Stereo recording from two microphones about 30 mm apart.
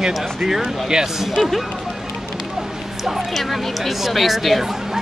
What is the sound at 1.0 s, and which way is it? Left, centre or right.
Speech, centre.